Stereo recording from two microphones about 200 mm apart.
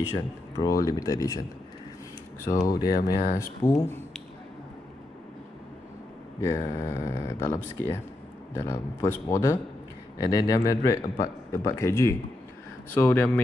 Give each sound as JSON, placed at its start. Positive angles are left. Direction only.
{"t": 0.6, "sound": "a man's voice", "side_deg": 15}
{"t": 2.5, "sound": "a man's voice", "side_deg": 15}
{"t": 6.4, "sound": "a man's voice", "side_deg": 15}